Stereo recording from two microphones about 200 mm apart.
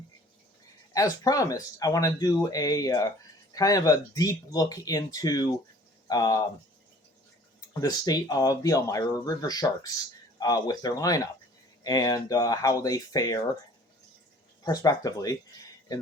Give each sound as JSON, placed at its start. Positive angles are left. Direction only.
{"t": 0.9, "sound": "speech", "side_deg": 20}
{"t": 7.6, "sound": "speech", "side_deg": 15}
{"t": 14.6, "sound": "speech", "side_deg": 20}